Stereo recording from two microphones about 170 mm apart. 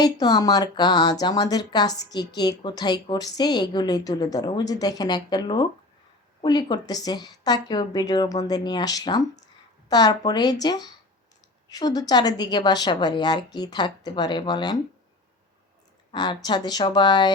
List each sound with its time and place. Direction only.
0.0 s speech: 25° left (ahead or behind)
16.1 s speech: 25° left (ahead or behind)